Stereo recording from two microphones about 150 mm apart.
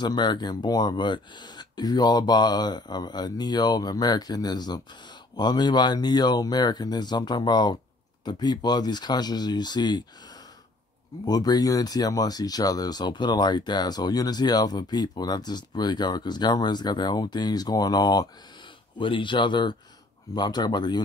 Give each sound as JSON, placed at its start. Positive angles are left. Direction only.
{"t": 0.0, "sound": "speech", "side_deg": 30}
{"t": 11.2, "sound": "speech", "side_deg": 25}